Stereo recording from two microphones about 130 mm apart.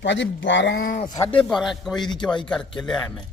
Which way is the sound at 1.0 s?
30° left (ahead or behind).